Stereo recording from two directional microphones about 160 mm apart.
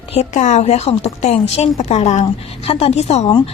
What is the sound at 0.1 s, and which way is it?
A woman's voice, 45° left (ahead or behind).